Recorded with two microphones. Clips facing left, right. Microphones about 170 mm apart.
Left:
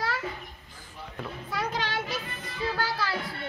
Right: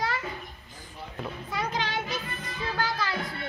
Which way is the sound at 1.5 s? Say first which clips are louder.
Even; centre (ahead or behind).